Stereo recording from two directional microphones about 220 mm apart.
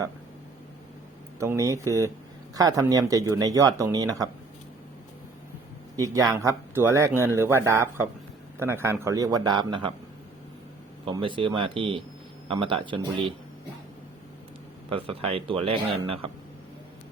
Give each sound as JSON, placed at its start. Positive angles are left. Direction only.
{"t": 1.4, "sound": "speech", "side_deg": -15}
{"t": 6.3, "sound": "speech", "side_deg": -15}
{"t": 11.0, "sound": "speech", "side_deg": -25}
{"t": 14.8, "sound": "speech", "side_deg": -25}